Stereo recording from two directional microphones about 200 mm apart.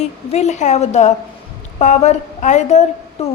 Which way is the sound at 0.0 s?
30° left (ahead or behind).